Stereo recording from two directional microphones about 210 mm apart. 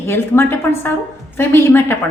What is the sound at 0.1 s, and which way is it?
A woman's voice, 10° left (ahead or behind).